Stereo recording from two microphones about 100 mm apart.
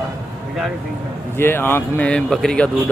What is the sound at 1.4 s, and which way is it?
Speech, 20° left (ahead or behind).